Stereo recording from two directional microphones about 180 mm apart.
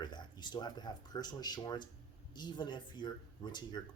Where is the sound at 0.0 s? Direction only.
25° left (ahead or behind).